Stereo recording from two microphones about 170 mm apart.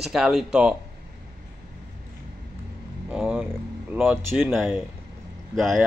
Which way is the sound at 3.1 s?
5° right (ahead or behind).